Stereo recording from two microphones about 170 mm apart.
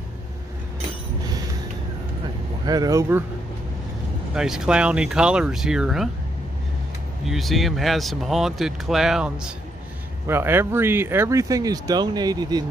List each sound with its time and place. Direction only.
2.6 s speech: 20° right (ahead or behind)
4.3 s speech: 5° right (ahead or behind)
7.2 s speech: centre (ahead or behind); by 12.6 s 25° right (ahead or behind)